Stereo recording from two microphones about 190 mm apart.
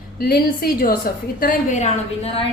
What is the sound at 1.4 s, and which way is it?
A woman's voice, 40° left (ahead or behind).